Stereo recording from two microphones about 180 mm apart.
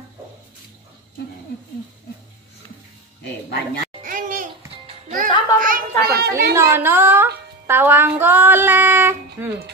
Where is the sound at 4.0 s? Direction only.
45° right (ahead or behind).